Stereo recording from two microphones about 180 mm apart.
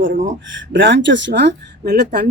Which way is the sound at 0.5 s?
90° right.